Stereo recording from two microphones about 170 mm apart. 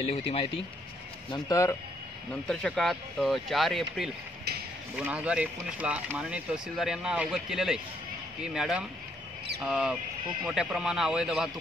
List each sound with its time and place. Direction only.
0.1 s speech: 35° left (ahead or behind)
1.3 s speech: 20° left (ahead or behind)
2.4 s speech: 5° left (ahead or behind)
5.0 s speech: 10° right (ahead or behind)